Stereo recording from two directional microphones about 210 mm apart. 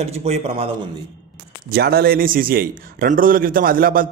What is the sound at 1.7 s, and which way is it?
A man's voice, 50° right (ahead or behind).